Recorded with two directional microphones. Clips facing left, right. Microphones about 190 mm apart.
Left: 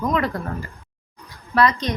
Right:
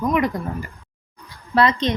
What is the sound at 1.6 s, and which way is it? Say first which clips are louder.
Speech: right 1 dB; 25° right (ahead or behind).